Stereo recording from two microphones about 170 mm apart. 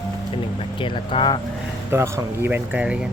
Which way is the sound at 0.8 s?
30° left (ahead or behind).